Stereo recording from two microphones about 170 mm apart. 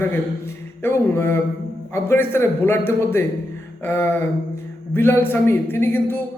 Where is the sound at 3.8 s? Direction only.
15° left (ahead or behind).